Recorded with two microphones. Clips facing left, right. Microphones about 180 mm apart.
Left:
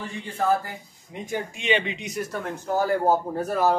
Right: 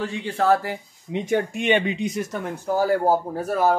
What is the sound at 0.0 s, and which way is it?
Speech, 80° right.